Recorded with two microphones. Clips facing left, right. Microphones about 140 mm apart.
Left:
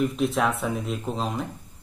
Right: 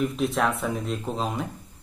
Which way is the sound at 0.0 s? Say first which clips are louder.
Left 1 dB; centre (ahead or behind).